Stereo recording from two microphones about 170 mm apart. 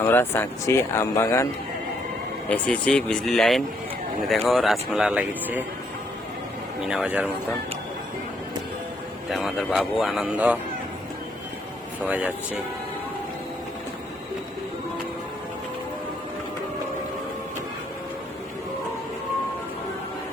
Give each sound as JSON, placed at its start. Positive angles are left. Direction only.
{"t": 0.0, "sound": "speech", "side_deg": 15}
{"t": 2.5, "sound": "speech", "side_deg": 5}
{"t": 6.8, "sound": "speech", "side_deg": -5}
{"t": 9.3, "sound": "speech", "side_deg": 0}
{"t": 12.0, "sound": "speech", "side_deg": -10}